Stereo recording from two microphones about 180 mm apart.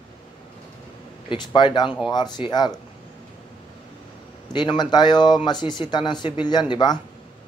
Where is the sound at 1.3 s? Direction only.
25° left (ahead or behind).